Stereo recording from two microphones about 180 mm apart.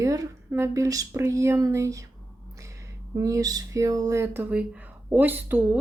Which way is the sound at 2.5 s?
15° right (ahead or behind).